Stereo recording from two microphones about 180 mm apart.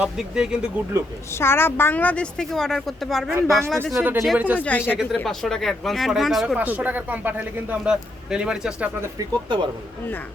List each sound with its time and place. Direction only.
0.0 s speech: 5° right (ahead or behind)
1.3 s a woman's voice: 15° left (ahead or behind)
3.2 s speech: 15° right (ahead or behind)
4.6 s a woman's voice: 10° left (ahead or behind)
9.0 s speech: 20° right (ahead or behind)